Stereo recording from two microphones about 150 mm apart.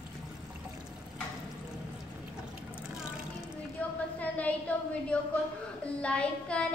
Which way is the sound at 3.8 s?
10° left (ahead or behind).